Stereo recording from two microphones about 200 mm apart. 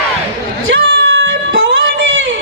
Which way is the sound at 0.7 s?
70° right (ahead or behind).